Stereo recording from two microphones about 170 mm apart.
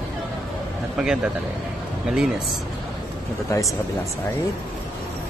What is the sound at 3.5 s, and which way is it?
Speech, 20° left (ahead or behind).